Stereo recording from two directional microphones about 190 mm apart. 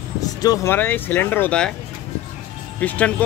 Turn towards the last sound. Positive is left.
turn(degrees=5)  # may be behind; listen again after turning